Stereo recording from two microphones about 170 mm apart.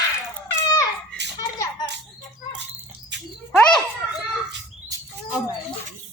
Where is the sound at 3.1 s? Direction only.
90° right.